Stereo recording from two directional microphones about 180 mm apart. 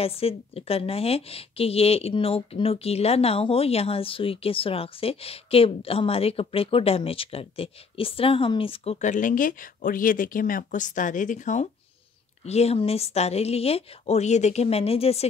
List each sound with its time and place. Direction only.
0.0 s a woman's voice: 35° left (ahead or behind)